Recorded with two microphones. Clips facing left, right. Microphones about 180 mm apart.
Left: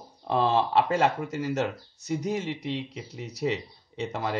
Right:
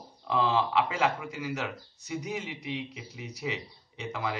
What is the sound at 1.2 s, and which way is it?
Speech, 45° left (ahead or behind).